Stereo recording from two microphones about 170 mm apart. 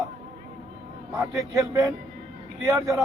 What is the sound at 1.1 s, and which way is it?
A man's voice, 20° right (ahead or behind).